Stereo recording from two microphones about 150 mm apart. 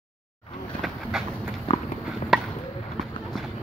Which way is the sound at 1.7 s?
40° left (ahead or behind).